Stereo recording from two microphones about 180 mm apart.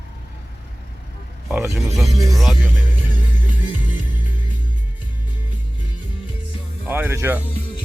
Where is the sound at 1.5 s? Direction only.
15° right (ahead or behind).